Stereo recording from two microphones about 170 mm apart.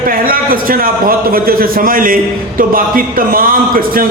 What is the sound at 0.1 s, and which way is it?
A man's voice, 55° right (ahead or behind).